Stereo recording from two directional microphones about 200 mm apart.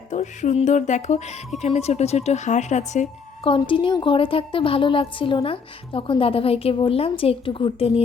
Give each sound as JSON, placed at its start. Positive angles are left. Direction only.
{"t": 0.1, "sound": "speech", "side_deg": 35}
{"t": 3.5, "sound": "a woman's voice", "side_deg": 25}